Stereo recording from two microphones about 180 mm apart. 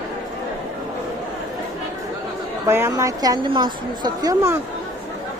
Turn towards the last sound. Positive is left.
turn(degrees=-20)  # may be behind; listen again after turning